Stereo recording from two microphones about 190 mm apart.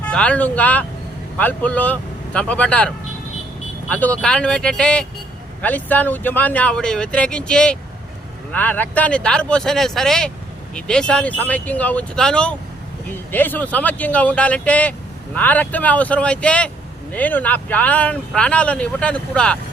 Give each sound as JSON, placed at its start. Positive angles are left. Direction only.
{"t": 0.0, "sound": "speech", "side_deg": 5}